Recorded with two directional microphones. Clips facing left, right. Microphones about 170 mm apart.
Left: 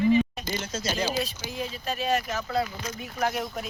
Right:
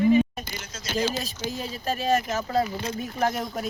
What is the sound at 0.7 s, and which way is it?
Speech, 30° left (ahead or behind).